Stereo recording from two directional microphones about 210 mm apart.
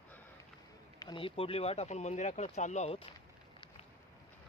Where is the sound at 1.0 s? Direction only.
20° left (ahead or behind).